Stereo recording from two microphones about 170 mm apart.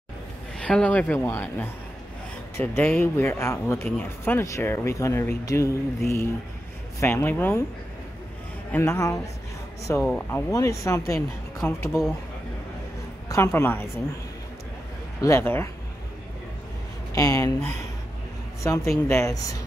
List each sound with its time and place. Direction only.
0.6 s speech: 5° left (ahead or behind)
8.7 s speech: 15° left (ahead or behind)
10.5 s speech: 20° left (ahead or behind)
13.3 s speech: 15° left (ahead or behind)
15.1 s speech: 15° left (ahead or behind)
17.1 s speech: 20° left (ahead or behind)
18.6 s speech: 15° left (ahead or behind)